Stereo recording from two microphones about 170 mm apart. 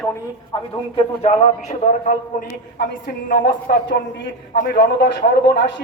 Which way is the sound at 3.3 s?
70° left (ahead or behind).